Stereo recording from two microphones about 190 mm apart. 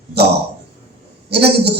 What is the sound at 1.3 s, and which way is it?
Speech, 60° right (ahead or behind).